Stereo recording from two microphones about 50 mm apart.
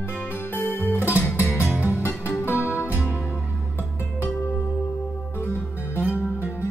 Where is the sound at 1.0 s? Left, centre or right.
Right.